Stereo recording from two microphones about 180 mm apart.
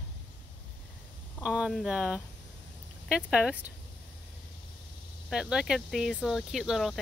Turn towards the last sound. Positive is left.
turn(degrees=0)  # may be behind; listen again after turning